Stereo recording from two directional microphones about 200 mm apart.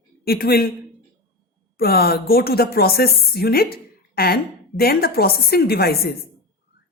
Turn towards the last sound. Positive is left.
turn(degrees=50)  # may be behind; listen again after turning